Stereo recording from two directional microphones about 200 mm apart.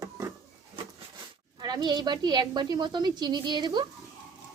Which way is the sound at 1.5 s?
20° right (ahead or behind).